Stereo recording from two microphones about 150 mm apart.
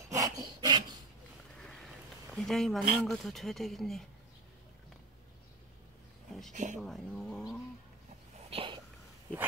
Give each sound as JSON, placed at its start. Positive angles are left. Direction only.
{"t": 0.1, "sound": "rub", "side_deg": -25}
{"t": 1.6, "sound": "speech", "side_deg": 0}
{"t": 6.5, "sound": "speech", "side_deg": -55}
{"t": 6.8, "sound": "speech", "side_deg": 0}
{"t": 8.5, "sound": "sneeze", "side_deg": -40}